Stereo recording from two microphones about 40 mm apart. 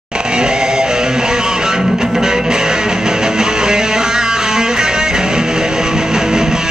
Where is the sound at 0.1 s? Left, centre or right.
Right.